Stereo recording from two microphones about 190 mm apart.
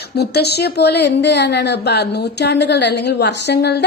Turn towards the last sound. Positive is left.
turn(degrees=60)  # may be behind; listen again after turning